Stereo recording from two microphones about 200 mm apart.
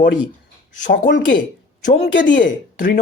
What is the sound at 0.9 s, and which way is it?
Speech, 60° left (ahead or behind).